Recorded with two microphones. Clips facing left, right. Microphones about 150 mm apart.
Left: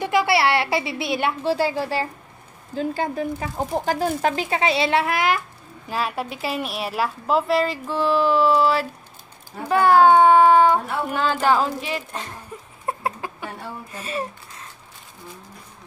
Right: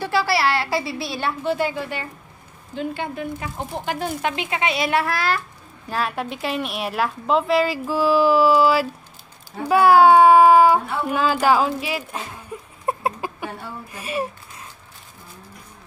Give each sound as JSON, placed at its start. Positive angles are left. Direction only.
{"t": 0.0, "sound": "a woman's voice", "side_deg": 20}
{"t": 1.5, "sound": "speech", "side_deg": 30}
{"t": 5.9, "sound": "a woman's voice", "side_deg": 5}
{"t": 12.8, "sound": "a sound", "side_deg": -20}
{"t": 13.9, "sound": "speech", "side_deg": -10}